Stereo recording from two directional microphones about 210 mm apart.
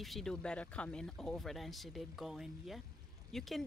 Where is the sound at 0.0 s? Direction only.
Centre (ahead or behind).